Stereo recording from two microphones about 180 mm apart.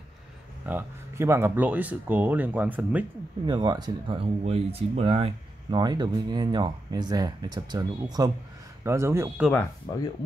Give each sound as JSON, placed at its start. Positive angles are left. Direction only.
{"t": 0.7, "sound": "speech", "side_deg": -10}
{"t": 3.4, "sound": "speech", "side_deg": -25}
{"t": 5.8, "sound": "speech", "side_deg": -25}
{"t": 9.5, "sound": "speech", "side_deg": 15}